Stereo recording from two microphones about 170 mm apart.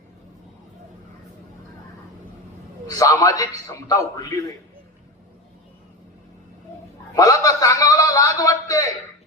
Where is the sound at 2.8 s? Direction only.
20° left (ahead or behind).